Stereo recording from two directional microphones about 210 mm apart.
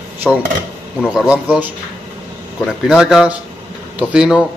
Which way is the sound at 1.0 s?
5° right (ahead or behind).